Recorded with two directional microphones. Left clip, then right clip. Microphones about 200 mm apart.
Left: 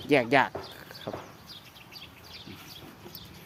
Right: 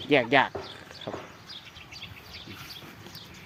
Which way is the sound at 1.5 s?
55° left (ahead or behind).